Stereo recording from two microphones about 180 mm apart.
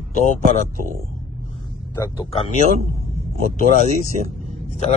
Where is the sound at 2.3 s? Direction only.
35° left (ahead or behind).